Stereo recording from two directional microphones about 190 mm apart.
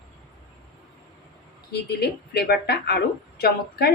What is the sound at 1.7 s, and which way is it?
A woman's voice, 60° left (ahead or behind).